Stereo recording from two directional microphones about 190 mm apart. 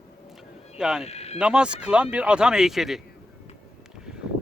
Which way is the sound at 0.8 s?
5° right (ahead or behind).